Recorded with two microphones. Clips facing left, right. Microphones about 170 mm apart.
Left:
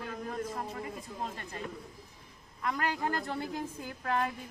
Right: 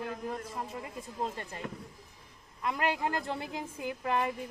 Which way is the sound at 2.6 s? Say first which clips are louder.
Right 2 dB; 20° right (ahead or behind).